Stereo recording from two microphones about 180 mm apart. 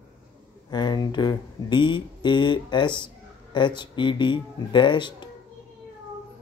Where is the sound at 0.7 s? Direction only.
25° left (ahead or behind).